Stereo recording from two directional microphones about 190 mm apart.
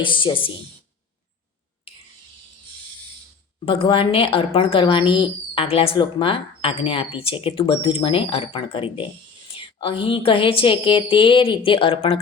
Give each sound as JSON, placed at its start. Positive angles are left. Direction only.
{"t": 0.0, "sound": "speech", "side_deg": 25}
{"t": 3.7, "sound": "speech", "side_deg": 30}